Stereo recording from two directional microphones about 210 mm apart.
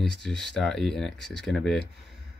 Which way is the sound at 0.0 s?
Centre (ahead or behind).